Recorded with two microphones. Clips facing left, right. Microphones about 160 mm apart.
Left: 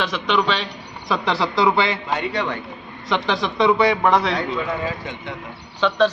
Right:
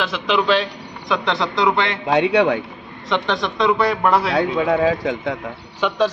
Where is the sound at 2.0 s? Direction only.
85° right.